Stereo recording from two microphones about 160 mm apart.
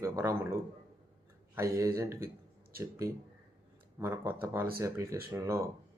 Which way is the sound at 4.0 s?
15° right (ahead or behind).